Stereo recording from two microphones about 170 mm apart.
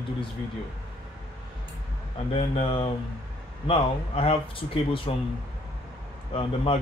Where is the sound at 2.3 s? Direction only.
30° left (ahead or behind).